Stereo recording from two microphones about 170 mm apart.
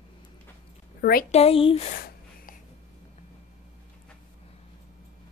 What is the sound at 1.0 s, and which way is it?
Speech, 60° left (ahead or behind).